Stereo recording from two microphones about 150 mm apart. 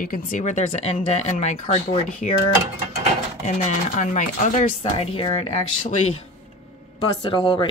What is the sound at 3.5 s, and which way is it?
Speech, 50° left (ahead or behind).